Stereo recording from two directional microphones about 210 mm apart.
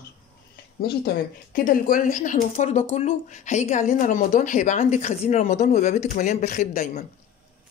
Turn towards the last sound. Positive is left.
turn(degrees=40)  # may be behind; listen again after turning